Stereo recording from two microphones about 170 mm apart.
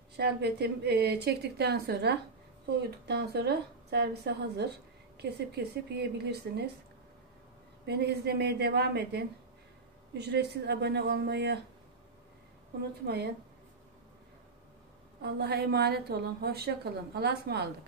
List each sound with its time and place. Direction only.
0.2 s a woman's voice: 75° right (ahead or behind)
7.8 s a woman's voice: 75° right (ahead or behind)
13.0 s a woman's voice: 75° right (ahead or behind)
15.2 s a woman's voice: 75° right (ahead or behind)